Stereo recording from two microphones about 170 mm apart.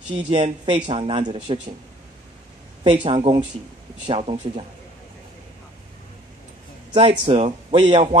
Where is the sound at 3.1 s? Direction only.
30° right (ahead or behind).